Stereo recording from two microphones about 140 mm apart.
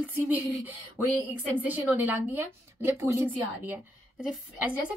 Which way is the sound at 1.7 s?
10° right (ahead or behind).